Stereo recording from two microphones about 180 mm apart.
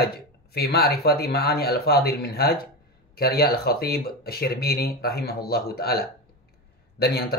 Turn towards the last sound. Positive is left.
turn(degrees=60)  # may be behind; listen again after turning